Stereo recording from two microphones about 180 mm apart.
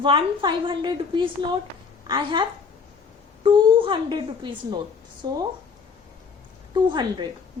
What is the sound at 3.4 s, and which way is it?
A woman's voice, 30° right (ahead or behind).